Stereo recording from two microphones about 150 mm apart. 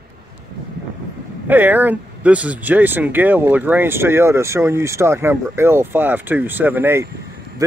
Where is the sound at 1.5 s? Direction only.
10° right (ahead or behind).